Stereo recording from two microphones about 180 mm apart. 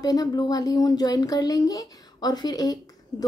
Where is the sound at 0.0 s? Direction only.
20° left (ahead or behind).